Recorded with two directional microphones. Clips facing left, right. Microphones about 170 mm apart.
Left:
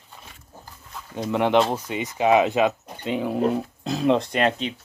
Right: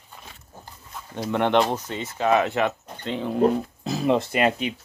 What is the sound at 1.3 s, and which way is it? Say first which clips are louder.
Speech: left 1 dB; 5° left (ahead or behind).